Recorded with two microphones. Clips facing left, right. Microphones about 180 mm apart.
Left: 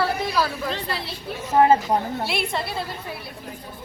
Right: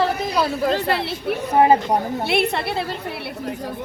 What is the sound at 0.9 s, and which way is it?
Speech, 65° right (ahead or behind).